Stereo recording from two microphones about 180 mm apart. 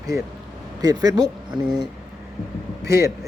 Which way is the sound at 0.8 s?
20° right (ahead or behind).